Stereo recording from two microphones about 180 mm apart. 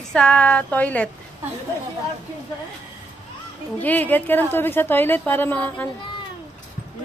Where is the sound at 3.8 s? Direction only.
10° left (ahead or behind).